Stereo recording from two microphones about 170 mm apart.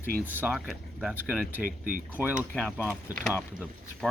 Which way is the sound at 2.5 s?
5° left (ahead or behind).